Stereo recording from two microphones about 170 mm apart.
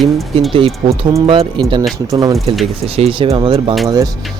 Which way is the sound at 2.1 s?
20° right (ahead or behind).